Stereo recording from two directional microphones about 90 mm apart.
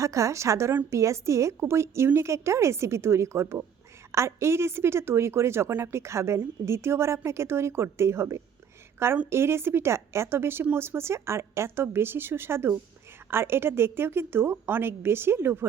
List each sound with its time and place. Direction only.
0.0 s a woman's voice: 35° right (ahead or behind)